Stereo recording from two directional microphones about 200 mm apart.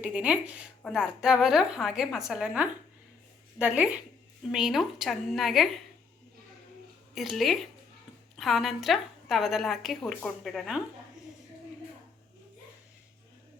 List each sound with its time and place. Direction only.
0.0 s a woman's voice: 5° right (ahead or behind)
7.1 s a woman's voice: centre (ahead or behind)